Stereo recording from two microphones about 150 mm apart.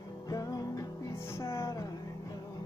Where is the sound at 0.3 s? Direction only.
25° left (ahead or behind).